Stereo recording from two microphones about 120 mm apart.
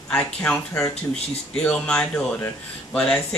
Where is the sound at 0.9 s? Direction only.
60° left (ahead or behind).